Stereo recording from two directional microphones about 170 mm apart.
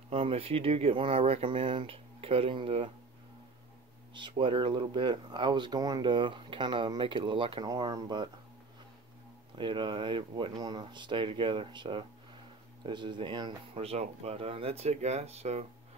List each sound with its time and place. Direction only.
0.1 s speech: 35° right (ahead or behind)
4.4 s speech: 30° right (ahead or behind)
9.6 s speech: 30° right (ahead or behind)